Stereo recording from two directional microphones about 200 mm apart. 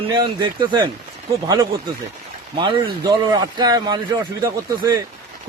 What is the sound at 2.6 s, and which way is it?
A man's voice, 25° right (ahead or behind).